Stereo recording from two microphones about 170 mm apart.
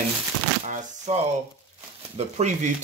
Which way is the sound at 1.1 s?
40° right (ahead or behind).